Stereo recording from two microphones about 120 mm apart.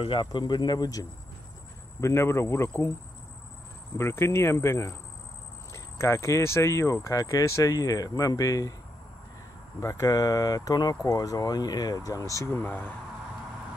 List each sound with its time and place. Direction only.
0.0 s speech: 45° left (ahead or behind); by 2.9 s 20° left (ahead or behind)
4.0 s speech: 20° left (ahead or behind)
9.8 s speech: 25° left (ahead or behind)
12.6 s speech: 15° left (ahead or behind)